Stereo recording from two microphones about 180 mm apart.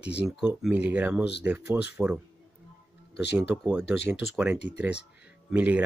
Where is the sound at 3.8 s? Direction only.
80° left.